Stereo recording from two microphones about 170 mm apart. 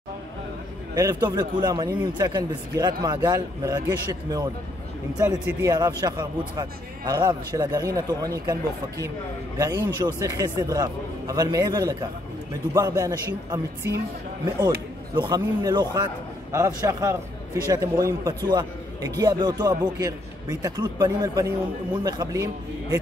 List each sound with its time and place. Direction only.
0.9 s a man's voice: 20° right (ahead or behind)
5.5 s a man's voice: 20° right (ahead or behind)
15.1 s a man's voice: 25° right (ahead or behind)